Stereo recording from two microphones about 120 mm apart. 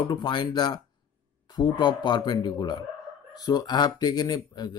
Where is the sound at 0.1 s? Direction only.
40° left (ahead or behind).